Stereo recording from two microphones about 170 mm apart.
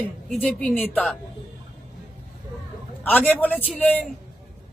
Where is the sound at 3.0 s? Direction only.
10° left (ahead or behind).